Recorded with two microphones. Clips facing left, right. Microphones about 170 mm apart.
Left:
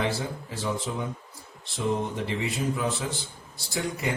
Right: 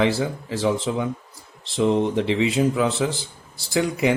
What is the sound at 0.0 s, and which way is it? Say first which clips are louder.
Speech: right 8 dB; 90° right.